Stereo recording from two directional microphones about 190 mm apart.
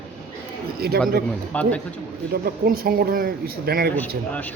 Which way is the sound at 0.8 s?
55° right (ahead or behind).